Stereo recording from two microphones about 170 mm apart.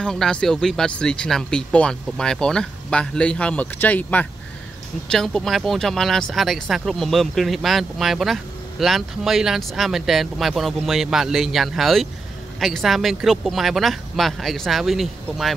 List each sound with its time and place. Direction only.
0.0 s speech: 5° left (ahead or behind)